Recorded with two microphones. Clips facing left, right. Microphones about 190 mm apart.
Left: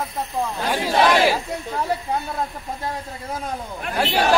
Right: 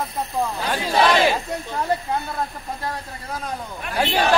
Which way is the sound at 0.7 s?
10° left (ahead or behind).